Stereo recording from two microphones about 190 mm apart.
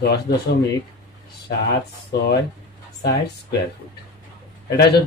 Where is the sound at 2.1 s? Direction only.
60° left (ahead or behind).